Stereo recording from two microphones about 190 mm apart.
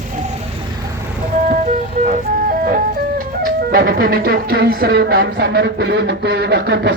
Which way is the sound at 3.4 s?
50° right (ahead or behind).